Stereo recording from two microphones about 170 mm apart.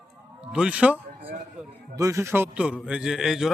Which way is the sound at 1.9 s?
20° right (ahead or behind).